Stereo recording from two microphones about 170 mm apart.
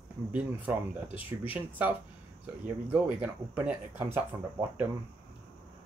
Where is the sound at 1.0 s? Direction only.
30° left (ahead or behind).